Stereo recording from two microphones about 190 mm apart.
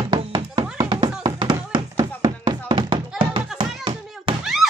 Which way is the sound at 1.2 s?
20° right (ahead or behind).